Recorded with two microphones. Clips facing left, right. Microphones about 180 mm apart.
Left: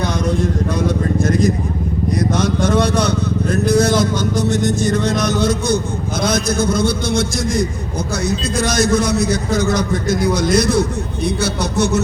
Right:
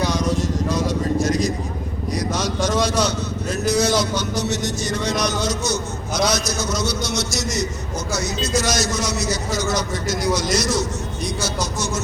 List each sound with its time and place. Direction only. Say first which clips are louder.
0.0 s vehicle: left 3 dB; 55° left (ahead or behind)
2.1 s a man's voice: left 5 dB; 55° left (ahead or behind)